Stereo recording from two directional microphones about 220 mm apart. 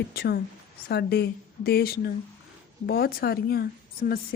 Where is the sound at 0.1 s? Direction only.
45° left (ahead or behind).